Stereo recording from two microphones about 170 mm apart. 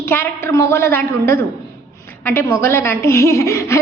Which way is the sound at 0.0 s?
15° left (ahead or behind).